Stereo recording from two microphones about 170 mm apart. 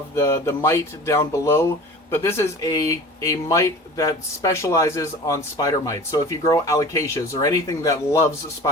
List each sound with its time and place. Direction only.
0.2 s speech: 15° left (ahead or behind)